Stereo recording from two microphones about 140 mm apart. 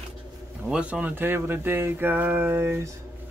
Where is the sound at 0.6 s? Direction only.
5° right (ahead or behind).